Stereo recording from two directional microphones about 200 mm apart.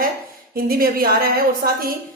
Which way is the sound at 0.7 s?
45° right (ahead or behind).